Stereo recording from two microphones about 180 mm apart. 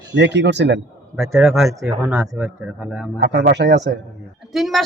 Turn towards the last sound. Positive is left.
turn(degrees=0)  # may be behind; listen again after turning